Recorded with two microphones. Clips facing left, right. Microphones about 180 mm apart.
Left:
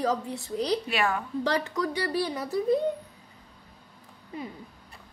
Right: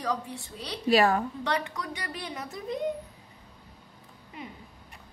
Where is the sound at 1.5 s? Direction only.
35° left (ahead or behind).